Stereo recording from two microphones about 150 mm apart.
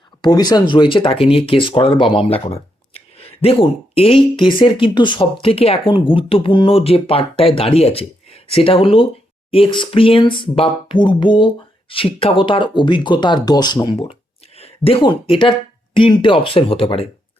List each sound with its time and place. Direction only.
0.2 s speech: 25° left (ahead or behind)
13.9 s speech: 40° left (ahead or behind)